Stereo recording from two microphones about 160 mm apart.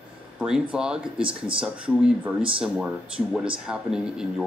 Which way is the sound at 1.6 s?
5° right (ahead or behind).